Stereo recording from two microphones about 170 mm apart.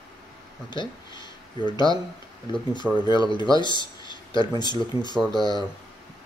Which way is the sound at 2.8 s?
5° right (ahead or behind).